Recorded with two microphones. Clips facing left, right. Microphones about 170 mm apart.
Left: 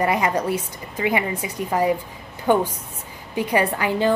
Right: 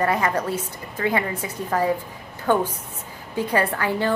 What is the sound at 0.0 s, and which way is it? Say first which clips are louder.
A woman's voice: left 1 dB; 15° left (ahead or behind).